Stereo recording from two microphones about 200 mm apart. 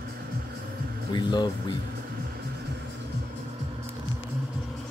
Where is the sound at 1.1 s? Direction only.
20° left (ahead or behind).